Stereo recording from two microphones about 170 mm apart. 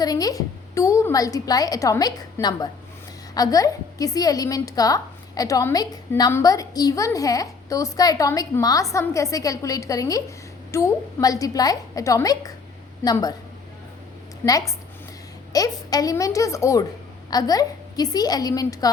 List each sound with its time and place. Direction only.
0.0 s a woman's voice: 20° left (ahead or behind)
14.4 s a woman's voice: 20° left (ahead or behind)